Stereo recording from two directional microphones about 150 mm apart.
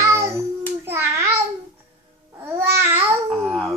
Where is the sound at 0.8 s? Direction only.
15° right (ahead or behind).